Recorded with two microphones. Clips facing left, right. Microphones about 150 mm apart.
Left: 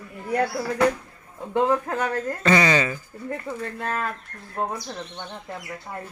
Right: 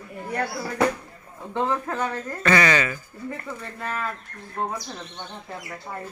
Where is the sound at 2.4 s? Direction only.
20° left (ahead or behind).